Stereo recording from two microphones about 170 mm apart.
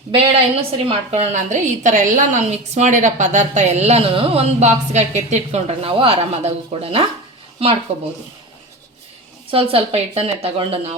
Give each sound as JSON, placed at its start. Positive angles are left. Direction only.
{"t": 0.1, "sound": "a woman's voice", "side_deg": -35}
{"t": 9.5, "sound": "a woman's voice", "side_deg": -35}